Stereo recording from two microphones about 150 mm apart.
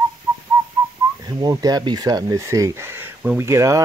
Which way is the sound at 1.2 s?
25° right (ahead or behind).